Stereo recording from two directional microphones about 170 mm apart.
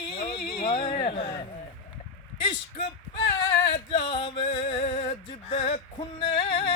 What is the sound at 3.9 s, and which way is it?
Music, 30° left (ahead or behind).